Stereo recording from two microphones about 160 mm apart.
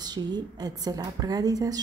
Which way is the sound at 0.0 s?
25° right (ahead or behind).